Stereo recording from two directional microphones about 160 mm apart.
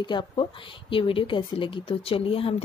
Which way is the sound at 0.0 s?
30° left (ahead or behind).